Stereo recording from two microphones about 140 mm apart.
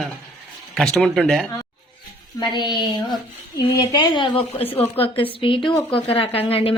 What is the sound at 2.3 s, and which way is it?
Speech, 30° left (ahead or behind).